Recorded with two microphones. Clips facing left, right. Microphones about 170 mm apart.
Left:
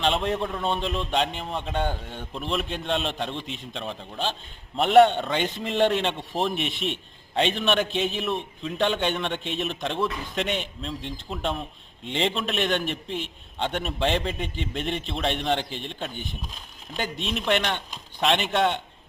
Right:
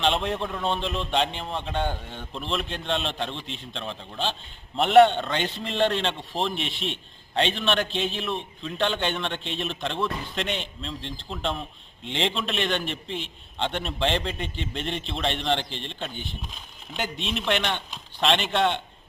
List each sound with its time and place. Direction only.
0.0 s speech: centre (ahead or behind)
6.7 s a man's voice: 50° left (ahead or behind)
7.3 s speech: 5° left (ahead or behind)